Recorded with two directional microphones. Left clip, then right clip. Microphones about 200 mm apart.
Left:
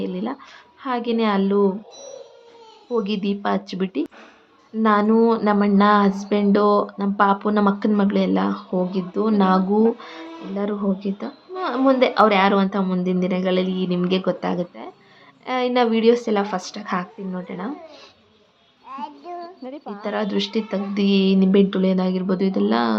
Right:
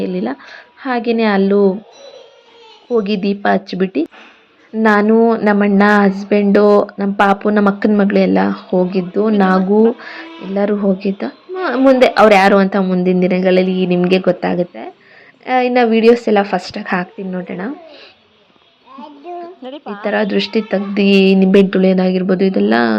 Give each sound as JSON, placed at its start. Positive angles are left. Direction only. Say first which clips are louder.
{"t": 0.0, "sound": "a woman's voice", "louder": "right 7 dB", "side_deg": -20}
{"t": 2.9, "sound": "a woman's voice", "louder": "right 7 dB", "side_deg": -20}
{"t": 5.1, "sound": "a woman's voice", "louder": "right 6 dB", "side_deg": -15}
{"t": 19.6, "sound": "a woman's voice", "louder": "right 6 dB", "side_deg": 0}
{"t": 20.0, "sound": "a woman's voice", "louder": "right 8 dB", "side_deg": -20}